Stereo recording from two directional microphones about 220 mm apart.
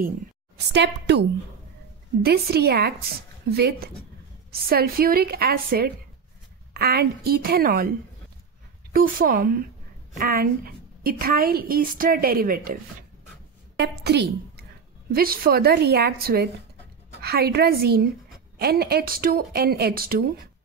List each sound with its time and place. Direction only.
0.7 s speech: 50° right (ahead or behind)
2.2 s speech: 45° right (ahead or behind)
8.9 s a woman's voice: 40° right (ahead or behind)
13.7 s speech: 50° right (ahead or behind)